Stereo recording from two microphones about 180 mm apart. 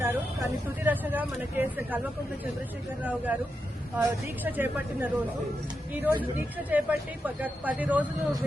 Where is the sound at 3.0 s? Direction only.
10° right (ahead or behind).